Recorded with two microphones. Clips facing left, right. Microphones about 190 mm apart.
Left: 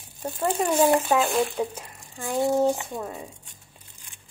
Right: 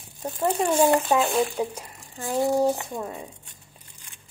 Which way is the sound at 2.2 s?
20° right (ahead or behind).